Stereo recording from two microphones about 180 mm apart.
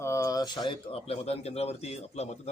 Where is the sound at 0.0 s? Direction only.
15° left (ahead or behind).